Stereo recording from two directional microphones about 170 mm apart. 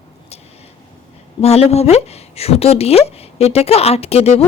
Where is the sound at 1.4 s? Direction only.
40° left (ahead or behind).